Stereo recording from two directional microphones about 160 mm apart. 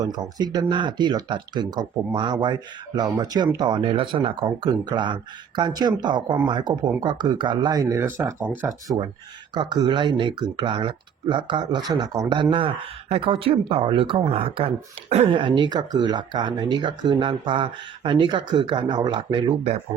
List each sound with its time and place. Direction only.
0.0 s speech: 25° right (ahead or behind)
9.6 s speech: 25° right (ahead or behind)